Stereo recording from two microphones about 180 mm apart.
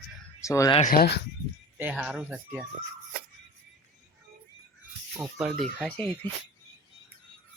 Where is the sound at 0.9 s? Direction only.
60° left (ahead or behind).